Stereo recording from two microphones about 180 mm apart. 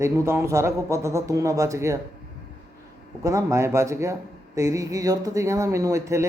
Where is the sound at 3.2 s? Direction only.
15° right (ahead or behind).